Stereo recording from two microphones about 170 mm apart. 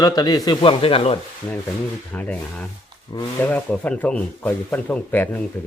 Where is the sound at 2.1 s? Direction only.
10° left (ahead or behind).